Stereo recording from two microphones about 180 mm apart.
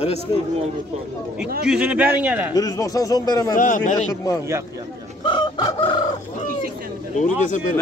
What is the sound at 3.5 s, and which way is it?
Speech, 45° left (ahead or behind).